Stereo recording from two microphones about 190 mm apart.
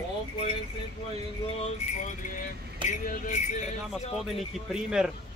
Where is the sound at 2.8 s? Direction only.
40° left (ahead or behind).